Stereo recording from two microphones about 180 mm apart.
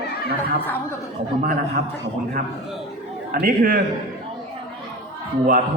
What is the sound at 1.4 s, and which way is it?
Speech, 50° right (ahead or behind).